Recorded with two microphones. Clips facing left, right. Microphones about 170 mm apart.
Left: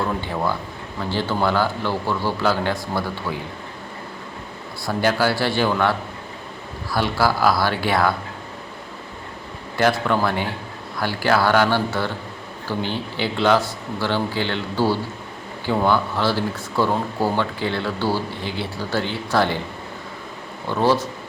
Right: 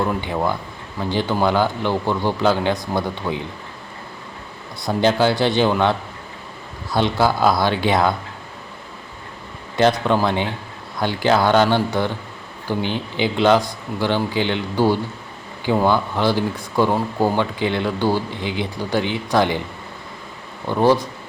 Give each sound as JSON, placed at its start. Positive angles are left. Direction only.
{"t": 0.0, "sound": "a man's voice", "side_deg": -15}
{"t": 4.9, "sound": "a man's voice", "side_deg": -20}
{"t": 9.7, "sound": "a man's voice", "side_deg": -20}
{"t": 20.7, "sound": "speech", "side_deg": -15}